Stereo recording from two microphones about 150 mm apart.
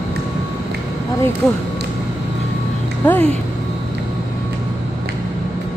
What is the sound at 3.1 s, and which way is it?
Speech, 10° left (ahead or behind).